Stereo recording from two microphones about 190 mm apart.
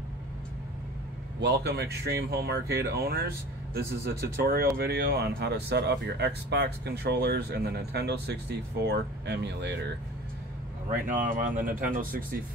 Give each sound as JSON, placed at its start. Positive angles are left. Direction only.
{"t": 1.4, "sound": "speech", "side_deg": -60}
{"t": 10.9, "sound": "speech", "side_deg": -45}